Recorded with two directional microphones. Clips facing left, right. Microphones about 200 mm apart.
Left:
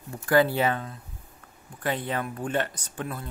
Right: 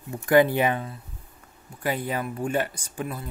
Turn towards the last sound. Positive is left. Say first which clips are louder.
# right 2 dB
turn(degrees=-10)  # may be behind; listen again after turning